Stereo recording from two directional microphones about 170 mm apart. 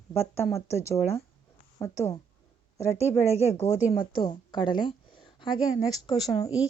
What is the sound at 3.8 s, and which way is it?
Speech, 10° right (ahead or behind).